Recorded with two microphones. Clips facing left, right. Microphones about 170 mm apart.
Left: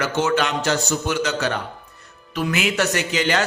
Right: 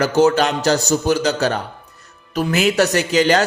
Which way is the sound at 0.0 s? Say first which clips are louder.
Right 6 dB; 40° right (ahead or behind).